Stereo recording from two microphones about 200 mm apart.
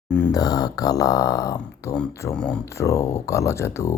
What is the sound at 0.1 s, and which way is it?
Speech, 15° left (ahead or behind).